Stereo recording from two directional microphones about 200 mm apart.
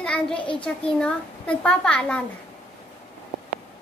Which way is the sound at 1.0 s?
5° left (ahead or behind).